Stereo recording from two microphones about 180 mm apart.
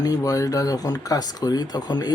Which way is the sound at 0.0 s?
20° left (ahead or behind).